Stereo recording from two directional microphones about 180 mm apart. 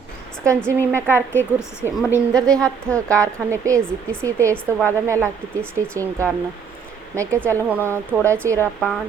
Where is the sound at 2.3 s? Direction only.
20° right (ahead or behind).